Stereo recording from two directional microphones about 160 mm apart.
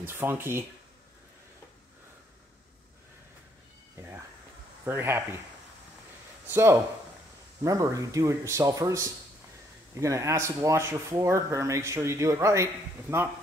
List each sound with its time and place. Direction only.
0.0 s speech: 15° right (ahead or behind)
3.9 s cat: 15° right (ahead or behind)
4.8 s speech: 15° right (ahead or behind)
6.4 s speech: 15° right (ahead or behind)